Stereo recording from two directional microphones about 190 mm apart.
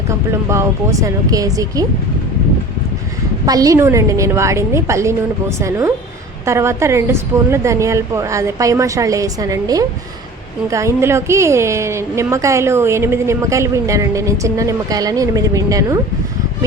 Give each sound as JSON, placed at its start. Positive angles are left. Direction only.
{"t": 0.1, "sound": "a woman's voice", "side_deg": -15}
{"t": 3.4, "sound": "a woman's voice", "side_deg": -20}